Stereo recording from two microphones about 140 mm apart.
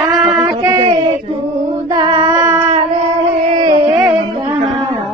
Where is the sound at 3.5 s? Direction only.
35° right (ahead or behind).